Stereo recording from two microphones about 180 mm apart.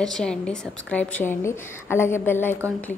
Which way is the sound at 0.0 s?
5° left (ahead or behind).